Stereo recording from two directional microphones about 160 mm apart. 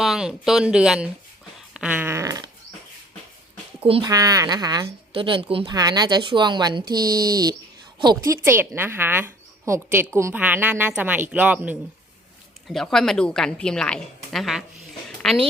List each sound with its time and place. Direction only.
0.0 s a woman's voice: centre (ahead or behind)
1.7 s a sound: 10° right (ahead or behind)
4.0 s speech: 25° right (ahead or behind)
5.7 s a woman's voice: 25° right (ahead or behind); by 11.8 s 10° right (ahead or behind)
12.6 s a woman's voice: centre (ahead or behind)